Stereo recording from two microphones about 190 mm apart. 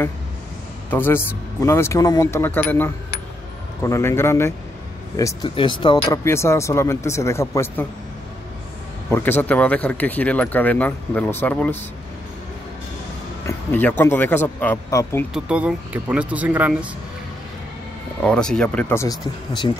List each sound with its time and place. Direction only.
0.8 s speech: 10° left (ahead or behind)
9.1 s speech: 10° left (ahead or behind)
13.5 s speech: 10° left (ahead or behind)
15.3 s speech: 5° right (ahead or behind)
18.2 s speech: 5° left (ahead or behind)